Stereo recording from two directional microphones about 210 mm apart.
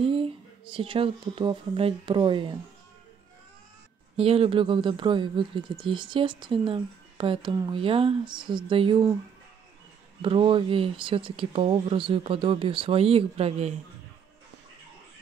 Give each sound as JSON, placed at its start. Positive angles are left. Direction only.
{"t": 0.0, "sound": "speech", "side_deg": -25}
{"t": 4.2, "sound": "speech", "side_deg": -25}
{"t": 10.2, "sound": "speech", "side_deg": -25}